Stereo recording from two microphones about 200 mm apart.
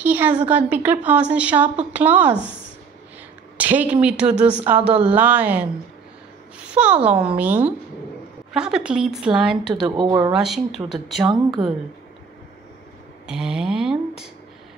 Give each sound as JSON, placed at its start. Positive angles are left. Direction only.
{"t": 0.0, "sound": "a woman's voice", "side_deg": -10}
{"t": 3.5, "sound": "a woman's voice", "side_deg": -10}
{"t": 9.7, "sound": "speech", "side_deg": -25}
{"t": 10.3, "sound": "speech", "side_deg": 0}
{"t": 13.3, "sound": "speech", "side_deg": -5}